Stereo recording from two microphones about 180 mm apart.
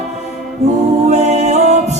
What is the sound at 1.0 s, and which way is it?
Music, 40° right (ahead or behind).